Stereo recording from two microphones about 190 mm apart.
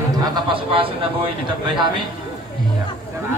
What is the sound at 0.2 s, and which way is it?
A man's voice, 25° right (ahead or behind).